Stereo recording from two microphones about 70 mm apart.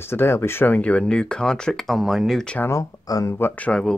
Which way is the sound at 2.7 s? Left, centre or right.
Left.